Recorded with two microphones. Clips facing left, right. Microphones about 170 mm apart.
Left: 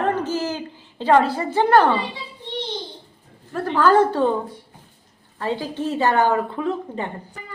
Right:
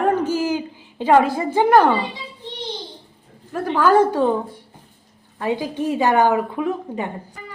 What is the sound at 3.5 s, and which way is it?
Speech, 10° right (ahead or behind).